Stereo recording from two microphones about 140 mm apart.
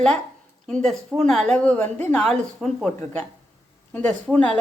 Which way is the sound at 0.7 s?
5° left (ahead or behind).